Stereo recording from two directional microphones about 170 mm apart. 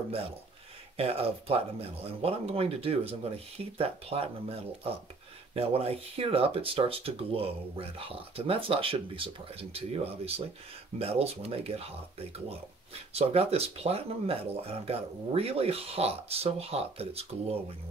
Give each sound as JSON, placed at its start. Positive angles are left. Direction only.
{"t": 0.9, "sound": "speech", "side_deg": -35}